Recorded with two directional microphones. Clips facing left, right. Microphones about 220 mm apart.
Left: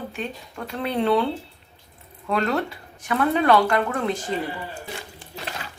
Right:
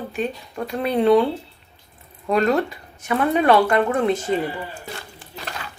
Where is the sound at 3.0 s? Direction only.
25° right (ahead or behind).